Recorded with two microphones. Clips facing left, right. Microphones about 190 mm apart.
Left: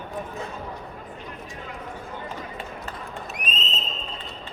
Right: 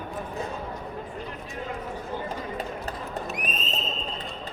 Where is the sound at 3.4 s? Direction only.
20° right (ahead or behind).